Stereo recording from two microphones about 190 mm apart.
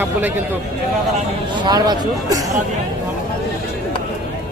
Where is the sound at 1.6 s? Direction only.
20° right (ahead or behind).